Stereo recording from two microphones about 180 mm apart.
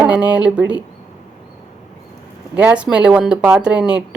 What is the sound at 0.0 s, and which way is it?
Speech, 5° right (ahead or behind).